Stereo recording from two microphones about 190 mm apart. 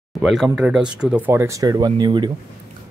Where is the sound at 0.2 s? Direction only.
Centre (ahead or behind).